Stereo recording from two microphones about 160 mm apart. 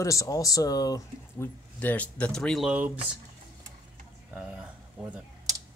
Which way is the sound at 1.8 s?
10° left (ahead or behind).